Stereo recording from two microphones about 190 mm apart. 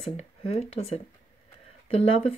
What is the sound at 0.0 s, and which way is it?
Speech, 35° left (ahead or behind).